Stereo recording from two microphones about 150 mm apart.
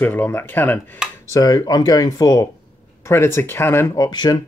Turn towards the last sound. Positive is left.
turn(degrees=30)  # may be behind; listen again after turning